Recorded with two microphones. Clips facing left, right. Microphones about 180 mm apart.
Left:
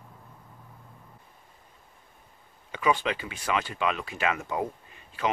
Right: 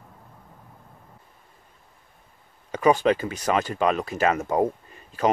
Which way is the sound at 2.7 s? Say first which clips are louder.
Right 7 dB; 40° right (ahead or behind).